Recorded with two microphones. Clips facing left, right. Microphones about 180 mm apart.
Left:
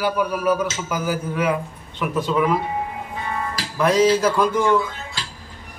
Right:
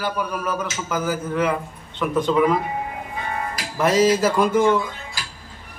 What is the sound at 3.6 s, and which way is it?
Music, 30° left (ahead or behind).